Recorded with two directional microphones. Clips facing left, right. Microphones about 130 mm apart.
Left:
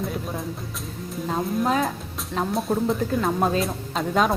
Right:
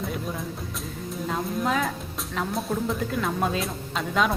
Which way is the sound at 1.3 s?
35° left (ahead or behind).